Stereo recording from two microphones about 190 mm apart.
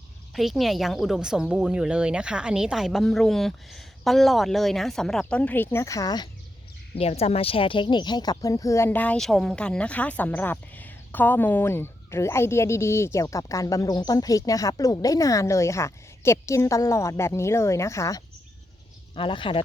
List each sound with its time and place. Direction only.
0.3 s speech: centre (ahead or behind); by 6.2 s 20° left (ahead or behind)
6.9 s speech: 30° left (ahead or behind); by 18.2 s 15° left (ahead or behind)
19.1 s speech: 25° left (ahead or behind)